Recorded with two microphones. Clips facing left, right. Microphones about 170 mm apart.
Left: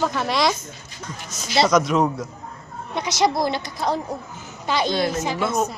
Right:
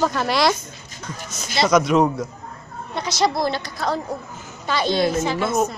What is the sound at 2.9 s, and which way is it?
A woman's voice, 15° left (ahead or behind).